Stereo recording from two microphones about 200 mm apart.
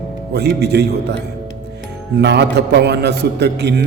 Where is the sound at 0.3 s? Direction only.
55° right (ahead or behind).